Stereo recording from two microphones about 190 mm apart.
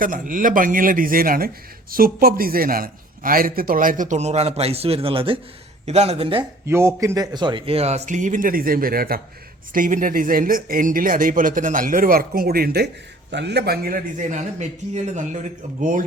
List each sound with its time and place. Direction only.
0.0 s speech: 45° right (ahead or behind); by 6.4 s 30° right (ahead or behind)
6.7 s speech: 15° right (ahead or behind); by 16.0 s 45° right (ahead or behind)